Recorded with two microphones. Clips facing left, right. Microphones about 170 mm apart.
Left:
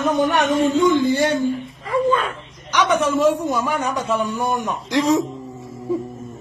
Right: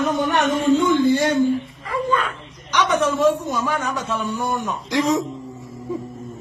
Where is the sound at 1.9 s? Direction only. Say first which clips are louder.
Left 4 dB; 25° left (ahead or behind).